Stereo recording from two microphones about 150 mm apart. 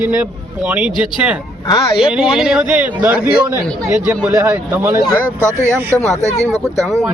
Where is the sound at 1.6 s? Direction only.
30° left (ahead or behind).